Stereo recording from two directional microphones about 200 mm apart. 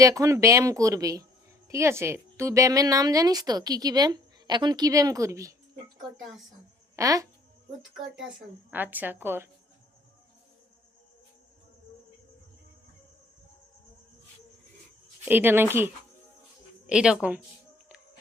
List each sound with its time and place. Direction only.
0.0 s a woman's voice: 15° right (ahead or behind)
6.9 s a woman's voice: 15° right (ahead or behind)
7.8 s a woman's voice: centre (ahead or behind)
15.2 s a woman's voice: 10° right (ahead or behind)